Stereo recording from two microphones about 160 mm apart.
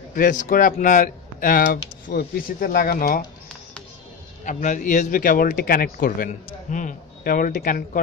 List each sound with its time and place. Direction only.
0.1 s a man's voice: 55° left (ahead or behind)
4.5 s a man's voice: 55° left (ahead or behind)